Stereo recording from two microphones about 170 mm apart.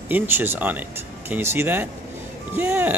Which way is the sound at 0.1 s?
10° right (ahead or behind).